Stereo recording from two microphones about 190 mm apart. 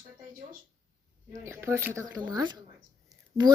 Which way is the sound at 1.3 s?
15° right (ahead or behind).